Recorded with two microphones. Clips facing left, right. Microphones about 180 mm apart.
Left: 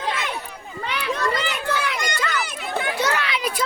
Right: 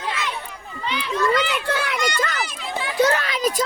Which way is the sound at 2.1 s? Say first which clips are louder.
Right 1 dB; 45° right (ahead or behind).